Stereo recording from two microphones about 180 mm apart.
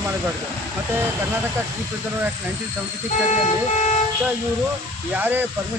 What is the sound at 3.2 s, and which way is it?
Speech, 40° left (ahead or behind).